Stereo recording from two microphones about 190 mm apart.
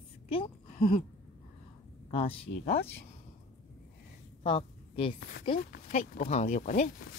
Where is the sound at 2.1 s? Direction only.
30° left (ahead or behind).